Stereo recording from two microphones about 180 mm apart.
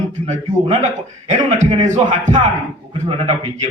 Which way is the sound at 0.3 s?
40° right (ahead or behind).